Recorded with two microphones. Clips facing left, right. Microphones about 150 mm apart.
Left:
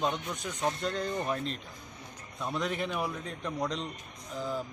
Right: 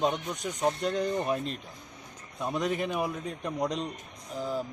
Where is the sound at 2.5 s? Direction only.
40° right (ahead or behind).